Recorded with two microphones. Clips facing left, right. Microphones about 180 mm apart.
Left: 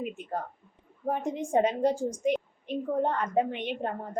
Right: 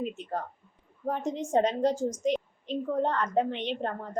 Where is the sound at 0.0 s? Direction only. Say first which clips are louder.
Right 1 dB; 10° left (ahead or behind).